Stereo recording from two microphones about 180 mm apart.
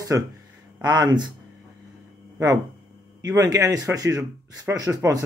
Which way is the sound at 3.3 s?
20° right (ahead or behind).